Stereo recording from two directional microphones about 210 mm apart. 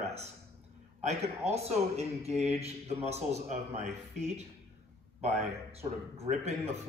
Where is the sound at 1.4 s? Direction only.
30° right (ahead or behind).